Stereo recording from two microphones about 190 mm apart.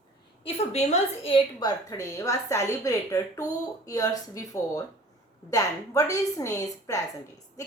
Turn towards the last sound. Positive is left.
turn(degrees=15)  # may be behind; listen again after turning